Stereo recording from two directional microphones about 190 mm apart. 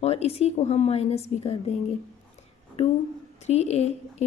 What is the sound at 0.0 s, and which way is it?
A woman's voice, 35° left (ahead or behind).